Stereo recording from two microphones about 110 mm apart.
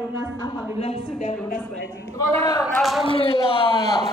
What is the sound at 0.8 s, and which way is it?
Speech, 80° left.